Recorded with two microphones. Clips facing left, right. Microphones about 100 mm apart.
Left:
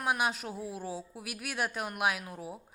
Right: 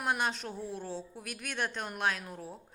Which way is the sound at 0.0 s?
5° left (ahead or behind).